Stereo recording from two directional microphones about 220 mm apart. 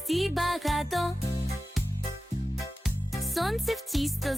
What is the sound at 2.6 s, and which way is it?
Music, centre (ahead or behind).